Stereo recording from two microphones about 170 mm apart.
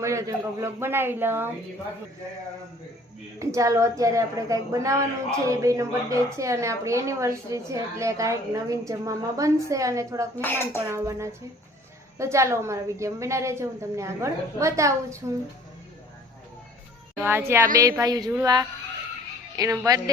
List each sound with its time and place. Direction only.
0.0 s a woman's voice: 20° right (ahead or behind)
3.3 s a woman's voice: 20° right (ahead or behind)
10.4 s a child's voice: 15° left (ahead or behind)
10.8 s a woman's voice: 15° right (ahead or behind)
17.2 s a woman's voice: 15° right (ahead or behind)
19.5 s a woman's voice: 20° right (ahead or behind)